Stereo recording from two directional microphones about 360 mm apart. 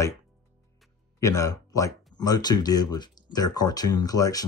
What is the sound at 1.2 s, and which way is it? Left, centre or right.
Speech, centre.